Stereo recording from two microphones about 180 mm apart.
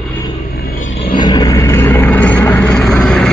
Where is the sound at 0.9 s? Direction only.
30° left (ahead or behind).